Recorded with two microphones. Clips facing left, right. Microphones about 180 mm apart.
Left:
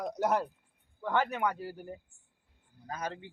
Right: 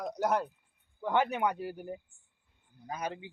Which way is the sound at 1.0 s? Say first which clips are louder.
Right 1 dB; 15° right (ahead or behind).